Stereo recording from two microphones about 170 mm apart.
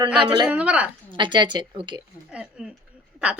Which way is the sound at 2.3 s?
5° right (ahead or behind).